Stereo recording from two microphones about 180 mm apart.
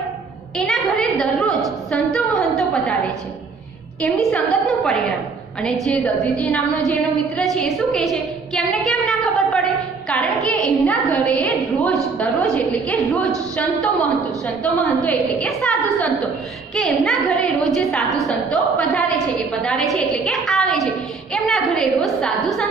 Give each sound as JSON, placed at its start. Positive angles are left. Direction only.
{"t": 0.6, "sound": "a woman's voice", "side_deg": 0}
{"t": 4.0, "sound": "a woman's voice", "side_deg": 5}